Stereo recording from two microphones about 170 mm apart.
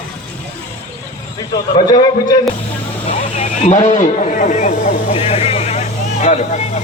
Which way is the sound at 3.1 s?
45° left (ahead or behind).